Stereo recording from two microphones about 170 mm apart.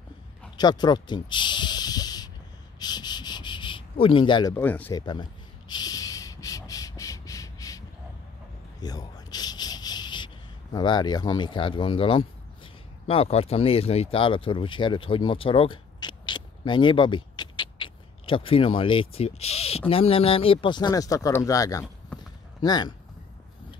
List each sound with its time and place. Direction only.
0.6 s speech: 25° left (ahead or behind)
2.8 s a sound: 25° left (ahead or behind)
4.6 s speech: 10° left (ahead or behind)
4.9 s rub: 25° left (ahead or behind)
8.8 s a sound: 25° left (ahead or behind)
13.0 s speech: 35° left (ahead or behind)